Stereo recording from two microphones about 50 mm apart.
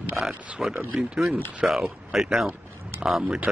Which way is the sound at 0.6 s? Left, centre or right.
Centre.